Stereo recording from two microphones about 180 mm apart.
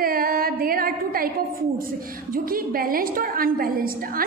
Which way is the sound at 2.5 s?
50° right (ahead or behind).